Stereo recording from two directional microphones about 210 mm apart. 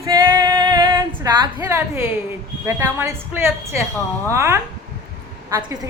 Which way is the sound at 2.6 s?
15° right (ahead or behind).